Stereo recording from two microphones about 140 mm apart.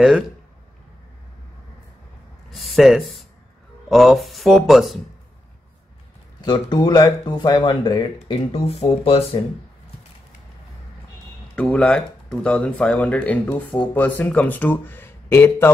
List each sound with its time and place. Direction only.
2.5 s speech: centre (ahead or behind)
6.4 s speech: 30° left (ahead or behind)
8.5 s speech: 45° left (ahead or behind)
11.5 s speech: 5° left (ahead or behind)